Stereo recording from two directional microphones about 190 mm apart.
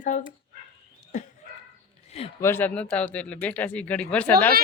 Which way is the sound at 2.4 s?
10° left (ahead or behind).